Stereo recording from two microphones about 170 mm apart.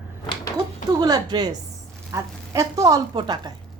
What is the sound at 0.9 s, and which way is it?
A woman's voice, 20° right (ahead or behind).